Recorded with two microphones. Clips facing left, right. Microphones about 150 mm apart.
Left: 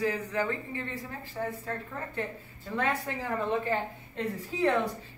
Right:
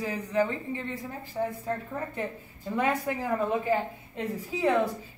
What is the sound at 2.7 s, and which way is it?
A woman's voice, 15° right (ahead or behind).